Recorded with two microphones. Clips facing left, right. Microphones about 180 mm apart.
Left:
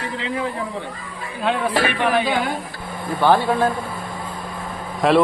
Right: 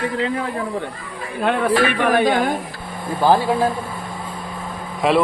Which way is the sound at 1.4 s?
50° right (ahead or behind).